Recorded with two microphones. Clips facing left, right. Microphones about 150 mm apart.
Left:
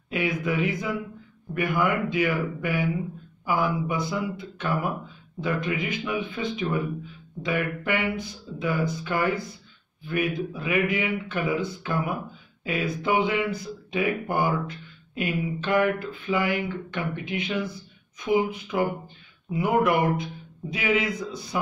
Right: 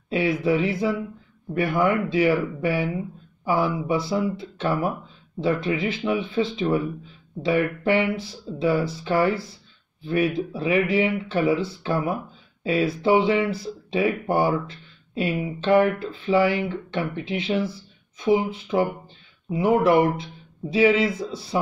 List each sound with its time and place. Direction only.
0.1 s speech: 30° right (ahead or behind)